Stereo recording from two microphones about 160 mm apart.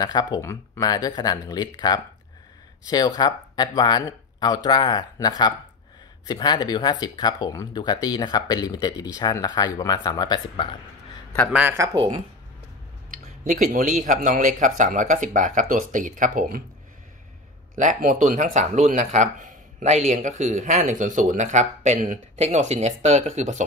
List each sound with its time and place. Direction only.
0.0 s speech: 25° left (ahead or behind)
11.5 s speech: 15° right (ahead or behind)
11.9 s speech: 30° right (ahead or behind)
13.7 s speech: 50° right (ahead or behind)
17.7 s speech: 50° right (ahead or behind)